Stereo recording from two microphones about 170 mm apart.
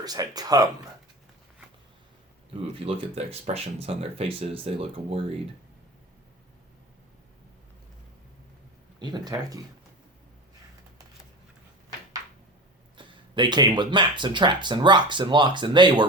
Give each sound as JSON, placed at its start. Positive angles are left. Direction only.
{"t": 0.0, "sound": "speech", "side_deg": -20}
{"t": 2.8, "sound": "speech", "side_deg": -35}
{"t": 9.0, "sound": "speech", "side_deg": -25}
{"t": 13.0, "sound": "speech", "side_deg": -25}